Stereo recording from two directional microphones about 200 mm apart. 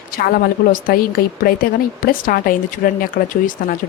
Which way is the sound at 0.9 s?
45° left (ahead or behind).